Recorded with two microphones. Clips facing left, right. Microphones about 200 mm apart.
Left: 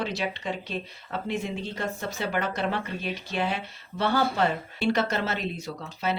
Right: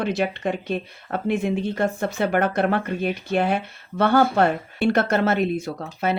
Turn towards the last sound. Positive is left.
turn(degrees=-55)  # may be behind; listen again after turning